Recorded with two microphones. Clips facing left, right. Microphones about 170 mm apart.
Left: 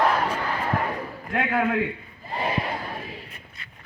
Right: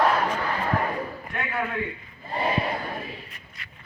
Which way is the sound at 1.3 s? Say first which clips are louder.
Left 7 dB; 75° left (ahead or behind).